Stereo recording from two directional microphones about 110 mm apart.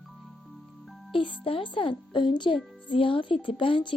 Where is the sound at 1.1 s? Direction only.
50° left (ahead or behind).